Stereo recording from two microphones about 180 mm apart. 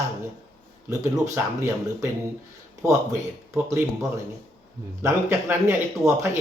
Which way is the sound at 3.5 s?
15° right (ahead or behind).